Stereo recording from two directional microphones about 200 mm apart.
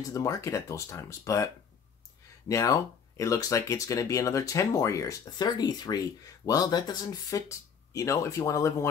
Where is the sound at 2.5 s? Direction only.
15° left (ahead or behind).